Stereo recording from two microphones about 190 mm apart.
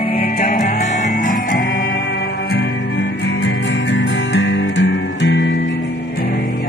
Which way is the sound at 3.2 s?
70° left (ahead or behind).